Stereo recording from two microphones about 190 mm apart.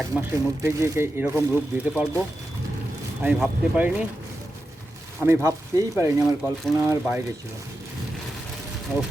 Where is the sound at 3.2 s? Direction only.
10° right (ahead or behind).